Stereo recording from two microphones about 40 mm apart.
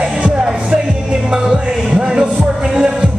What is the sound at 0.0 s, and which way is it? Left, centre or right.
Music, right.